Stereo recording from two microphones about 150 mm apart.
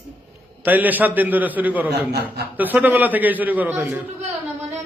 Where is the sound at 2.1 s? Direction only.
90° right.